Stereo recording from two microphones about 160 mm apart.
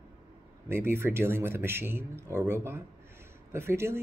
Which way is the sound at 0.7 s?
15° right (ahead or behind).